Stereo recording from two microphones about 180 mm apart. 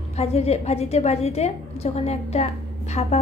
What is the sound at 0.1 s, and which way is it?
A woman's voice, 35° left (ahead or behind).